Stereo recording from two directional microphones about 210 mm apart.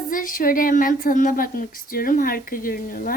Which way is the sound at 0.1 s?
40° left (ahead or behind).